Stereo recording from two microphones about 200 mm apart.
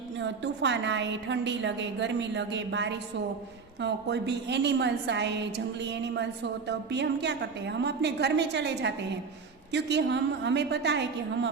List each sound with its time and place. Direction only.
0.2 s a woman's voice: 60° right (ahead or behind)